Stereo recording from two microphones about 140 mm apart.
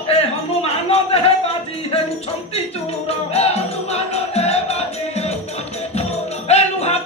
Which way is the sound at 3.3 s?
50° left (ahead or behind).